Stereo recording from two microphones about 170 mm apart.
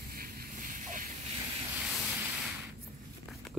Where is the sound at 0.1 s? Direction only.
60° right (ahead or behind).